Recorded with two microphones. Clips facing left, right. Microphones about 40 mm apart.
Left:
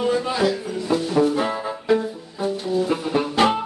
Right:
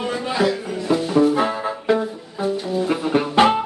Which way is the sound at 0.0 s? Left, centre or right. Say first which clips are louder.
Even; centre.